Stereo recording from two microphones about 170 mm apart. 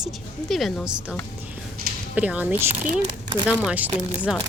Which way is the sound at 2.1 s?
10° right (ahead or behind).